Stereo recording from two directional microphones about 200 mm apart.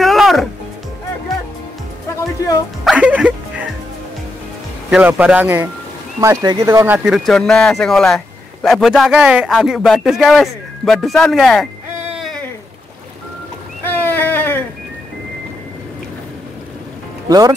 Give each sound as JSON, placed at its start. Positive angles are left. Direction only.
{"t": 0.0, "sound": "music", "side_deg": 0}
{"t": 2.8, "sound": "music", "side_deg": -5}
{"t": 4.8, "sound": "speech", "side_deg": -5}
{"t": 7.2, "sound": "speech", "side_deg": 0}
{"t": 13.8, "sound": "a sound", "side_deg": 10}
{"t": 17.3, "sound": "speech", "side_deg": -20}